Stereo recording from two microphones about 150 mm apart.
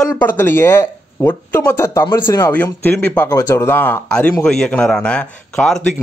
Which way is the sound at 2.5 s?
10° left (ahead or behind).